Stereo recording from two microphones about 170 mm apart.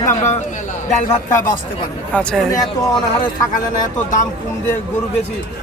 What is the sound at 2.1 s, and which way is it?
Speech, 5° left (ahead or behind).